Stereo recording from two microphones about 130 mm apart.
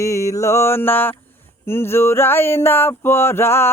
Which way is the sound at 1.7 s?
20° left (ahead or behind).